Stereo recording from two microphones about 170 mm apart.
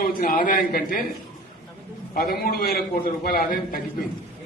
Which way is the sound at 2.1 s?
65° left (ahead or behind).